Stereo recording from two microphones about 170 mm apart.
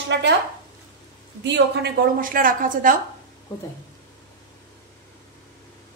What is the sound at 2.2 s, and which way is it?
Speech, 55° right (ahead or behind).